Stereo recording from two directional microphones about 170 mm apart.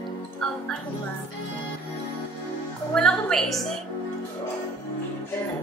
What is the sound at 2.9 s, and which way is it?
Speech, 5° left (ahead or behind).